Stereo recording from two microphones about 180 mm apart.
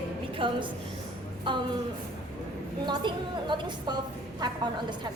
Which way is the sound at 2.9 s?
25° right (ahead or behind).